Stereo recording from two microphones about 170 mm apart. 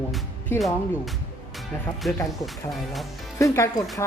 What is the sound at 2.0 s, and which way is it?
Speech, centre (ahead or behind).